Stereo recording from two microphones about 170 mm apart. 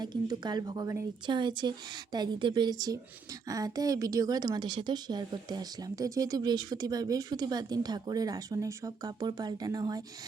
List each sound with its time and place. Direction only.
0.0 s speech: 25° right (ahead or behind)